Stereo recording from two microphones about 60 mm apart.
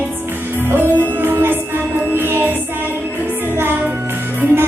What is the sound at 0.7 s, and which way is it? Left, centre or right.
Music, right.